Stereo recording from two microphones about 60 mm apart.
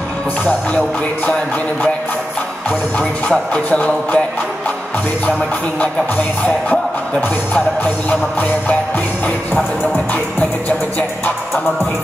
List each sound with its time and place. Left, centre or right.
3.0 s music: centre
5.8 s music: left